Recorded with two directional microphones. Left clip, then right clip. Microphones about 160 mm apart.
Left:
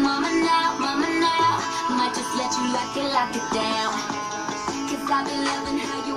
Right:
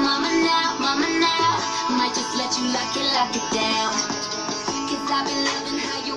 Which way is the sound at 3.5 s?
Centre (ahead or behind).